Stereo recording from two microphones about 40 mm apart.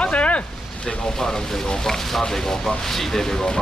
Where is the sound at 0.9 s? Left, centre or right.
Centre.